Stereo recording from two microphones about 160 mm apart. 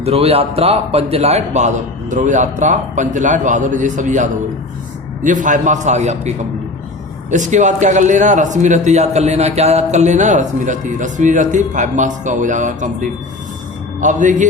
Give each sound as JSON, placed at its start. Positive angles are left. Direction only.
{"t": 0.0, "sound": "a man's voice", "side_deg": -40}